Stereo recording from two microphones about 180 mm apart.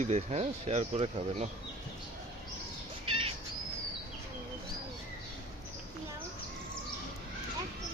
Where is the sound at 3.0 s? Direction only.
30° right (ahead or behind).